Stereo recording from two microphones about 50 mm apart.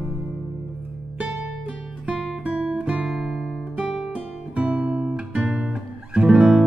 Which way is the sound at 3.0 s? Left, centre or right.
Centre.